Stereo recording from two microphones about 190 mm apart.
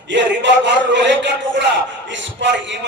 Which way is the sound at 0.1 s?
70° right (ahead or behind).